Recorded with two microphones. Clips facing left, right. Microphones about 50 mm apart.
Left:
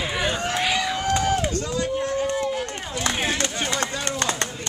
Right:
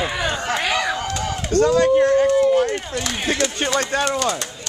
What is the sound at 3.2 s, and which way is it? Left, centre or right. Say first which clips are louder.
Speech: right 4 dB; left.